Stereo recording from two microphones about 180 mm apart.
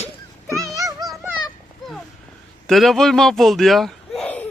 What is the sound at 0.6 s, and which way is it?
Music, 20° right (ahead or behind).